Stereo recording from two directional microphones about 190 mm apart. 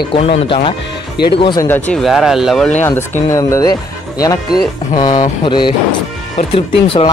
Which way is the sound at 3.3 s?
15° left (ahead or behind).